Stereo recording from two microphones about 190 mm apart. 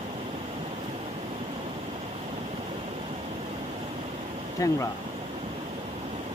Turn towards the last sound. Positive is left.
turn(degrees=15)  # may be behind; listen again after turning